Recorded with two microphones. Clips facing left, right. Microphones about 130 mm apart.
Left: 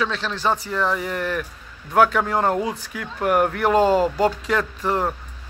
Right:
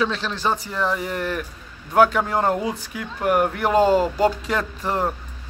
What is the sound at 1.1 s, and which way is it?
Speech, 30° right (ahead or behind).